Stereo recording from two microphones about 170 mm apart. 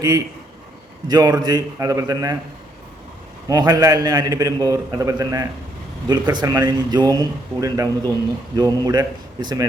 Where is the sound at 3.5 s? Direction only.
20° right (ahead or behind).